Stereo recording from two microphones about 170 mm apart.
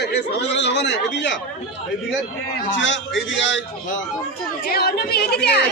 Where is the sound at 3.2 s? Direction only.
90° left.